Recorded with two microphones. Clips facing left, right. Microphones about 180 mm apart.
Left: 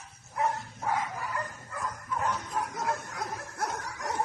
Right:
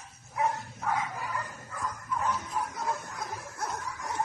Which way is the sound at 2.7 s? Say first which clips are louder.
Left 1 dB; 70° left (ahead or behind).